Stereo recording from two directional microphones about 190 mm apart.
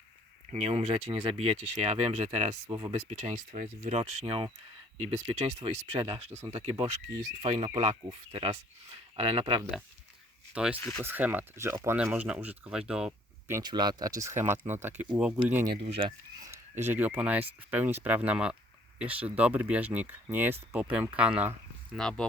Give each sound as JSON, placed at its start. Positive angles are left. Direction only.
{"t": 0.5, "sound": "speech", "side_deg": -35}
{"t": 2.6, "sound": "speech", "side_deg": -20}
{"t": 2.9, "sound": "speech", "side_deg": -35}
{"t": 10.5, "sound": "speech", "side_deg": -5}
{"t": 12.9, "sound": "a sound", "side_deg": -5}
{"t": 13.6, "sound": "speech", "side_deg": -20}
{"t": 16.0, "sound": "speech", "side_deg": -25}
{"t": 16.5, "sound": "speech", "side_deg": -10}
{"t": 21.9, "sound": "speech", "side_deg": 5}